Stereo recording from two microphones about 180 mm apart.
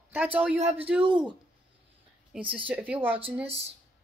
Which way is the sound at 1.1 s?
25° right (ahead or behind).